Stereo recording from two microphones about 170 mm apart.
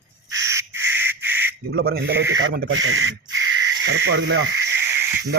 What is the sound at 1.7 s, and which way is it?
Speech, 65° right (ahead or behind).